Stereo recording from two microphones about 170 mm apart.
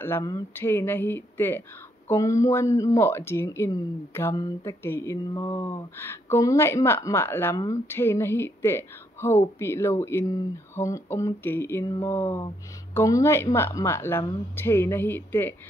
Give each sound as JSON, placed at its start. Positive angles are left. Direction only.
{"t": 0.0, "sound": "speech", "side_deg": 20}